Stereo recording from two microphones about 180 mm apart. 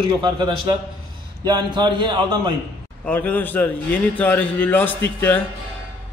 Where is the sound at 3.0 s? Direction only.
10° left (ahead or behind).